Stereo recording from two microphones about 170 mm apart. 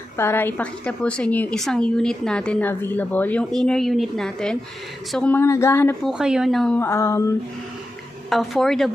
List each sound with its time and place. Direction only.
0.2 s a woman's voice: 15° left (ahead or behind)
6.0 s a woman's voice: 5° right (ahead or behind)
6.8 s speech: 15° left (ahead or behind)
8.3 s a woman's voice: centre (ahead or behind)